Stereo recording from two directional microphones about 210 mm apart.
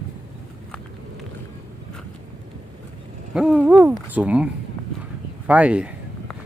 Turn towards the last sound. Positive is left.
turn(degrees=-5)  # may be behind; listen again after turning